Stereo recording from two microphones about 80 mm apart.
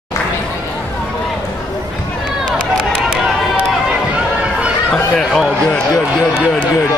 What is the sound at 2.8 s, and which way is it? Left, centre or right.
Run, centre.